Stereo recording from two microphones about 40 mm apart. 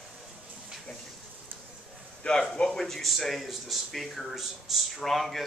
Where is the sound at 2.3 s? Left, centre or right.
Left.